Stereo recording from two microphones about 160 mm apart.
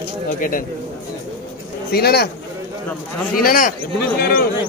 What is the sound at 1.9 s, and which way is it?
Speech, 80° left.